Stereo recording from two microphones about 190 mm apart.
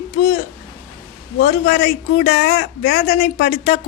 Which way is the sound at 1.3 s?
55° left (ahead or behind).